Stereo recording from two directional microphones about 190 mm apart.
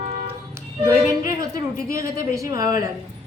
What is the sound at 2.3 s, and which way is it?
Speech, 20° right (ahead or behind).